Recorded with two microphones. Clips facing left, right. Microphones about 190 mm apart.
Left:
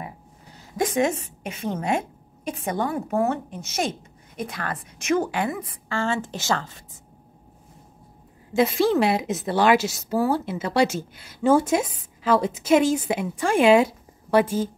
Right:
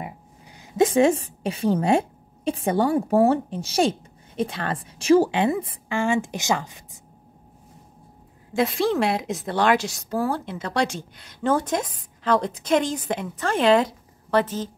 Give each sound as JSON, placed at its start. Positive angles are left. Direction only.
{"t": 0.0, "sound": "a sound", "side_deg": -15}
{"t": 0.8, "sound": "a woman's voice", "side_deg": -30}
{"t": 5.9, "sound": "a woman's voice", "side_deg": -15}
{"t": 8.5, "sound": "a woman's voice", "side_deg": 0}